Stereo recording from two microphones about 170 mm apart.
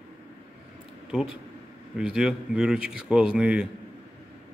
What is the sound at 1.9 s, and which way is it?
Speech, 5° right (ahead or behind).